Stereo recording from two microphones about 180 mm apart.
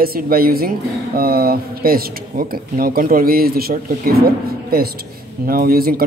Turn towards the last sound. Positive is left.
turn(degrees=-55)  # may be behind; listen again after turning